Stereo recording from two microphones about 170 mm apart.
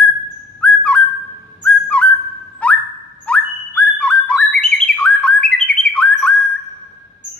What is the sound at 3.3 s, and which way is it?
Bird, 5° left (ahead or behind).